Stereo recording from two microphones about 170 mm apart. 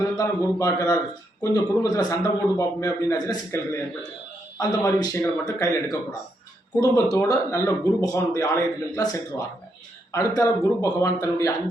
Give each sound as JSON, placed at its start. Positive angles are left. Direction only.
{"t": 0.0, "sound": "a man's voice", "side_deg": 20}